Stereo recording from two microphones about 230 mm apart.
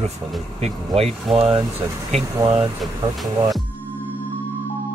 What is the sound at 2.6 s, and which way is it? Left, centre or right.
Speech, centre.